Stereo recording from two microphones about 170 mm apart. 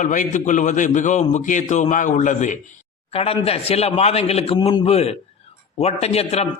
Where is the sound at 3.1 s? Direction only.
35° left (ahead or behind).